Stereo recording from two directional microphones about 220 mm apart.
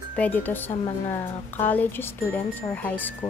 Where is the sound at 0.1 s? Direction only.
5° left (ahead or behind).